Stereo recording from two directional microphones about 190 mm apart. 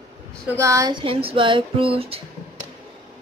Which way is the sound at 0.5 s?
15° right (ahead or behind).